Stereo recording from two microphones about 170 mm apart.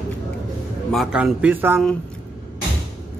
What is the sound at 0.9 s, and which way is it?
Speech, 5° right (ahead or behind).